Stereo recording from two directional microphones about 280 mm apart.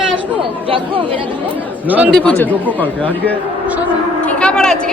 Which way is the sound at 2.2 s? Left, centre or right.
Centre.